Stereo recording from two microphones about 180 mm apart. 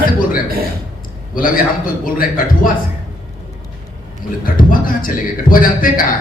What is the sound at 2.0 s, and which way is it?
Speech, 50° left (ahead or behind).